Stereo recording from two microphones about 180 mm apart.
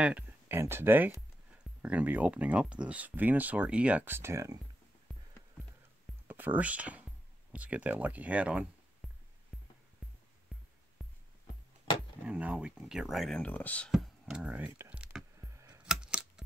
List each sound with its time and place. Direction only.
0.0 s speech: 10° right (ahead or behind)
6.2 s speech: 10° right (ahead or behind)
9.0 s music: centre (ahead or behind)
11.0 s music: centre (ahead or behind)
12.2 s speech: 5° right (ahead or behind)
15.5 s a sound: 15° right (ahead or behind)
15.8 s coin: 5° right (ahead or behind)